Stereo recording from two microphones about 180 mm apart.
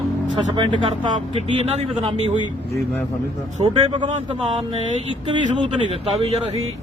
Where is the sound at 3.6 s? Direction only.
40° right (ahead or behind).